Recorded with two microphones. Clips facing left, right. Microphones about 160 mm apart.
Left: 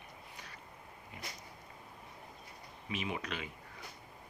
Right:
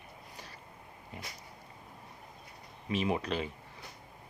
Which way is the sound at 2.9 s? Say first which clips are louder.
Right 8 dB; 35° right (ahead or behind).